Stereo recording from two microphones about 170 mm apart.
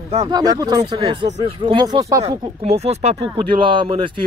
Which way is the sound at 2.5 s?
40° right (ahead or behind).